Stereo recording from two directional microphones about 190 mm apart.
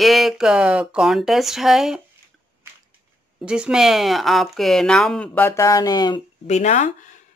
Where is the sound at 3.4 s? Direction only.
5° right (ahead or behind); by 6.2 s 20° left (ahead or behind).